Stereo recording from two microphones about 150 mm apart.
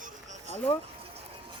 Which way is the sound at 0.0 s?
50° right (ahead or behind).